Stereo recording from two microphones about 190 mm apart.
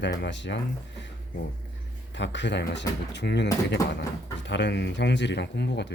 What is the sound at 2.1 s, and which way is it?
Speech, 70° left (ahead or behind).